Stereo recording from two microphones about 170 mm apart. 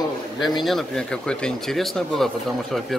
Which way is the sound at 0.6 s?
5° left (ahead or behind).